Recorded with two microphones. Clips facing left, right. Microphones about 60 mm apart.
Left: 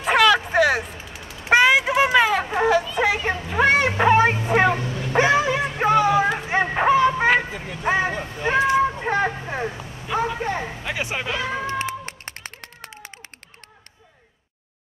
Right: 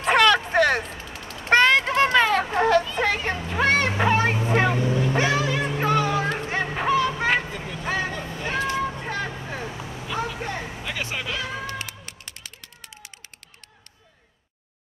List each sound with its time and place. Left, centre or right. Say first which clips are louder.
0.0 s a sound: left 1 dB; centre
4.8 s vehicle: right 5 dB; right
5.1 s cat: left 10 dB; left
5.8 s music: left 6 dB; centre
6.5 s a sound: left 5 dB; left
7.2 s vehicle: left 4 dB; centre
7.8 s vehicle: left 6 dB; left
10.8 s run: left 3 dB; centre; by 13.1 s left